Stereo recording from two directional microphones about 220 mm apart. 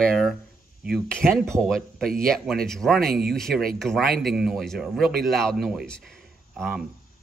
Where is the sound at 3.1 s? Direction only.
45° right (ahead or behind).